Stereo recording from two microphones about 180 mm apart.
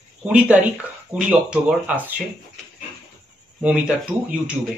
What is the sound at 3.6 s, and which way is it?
Speech, 5° right (ahead or behind).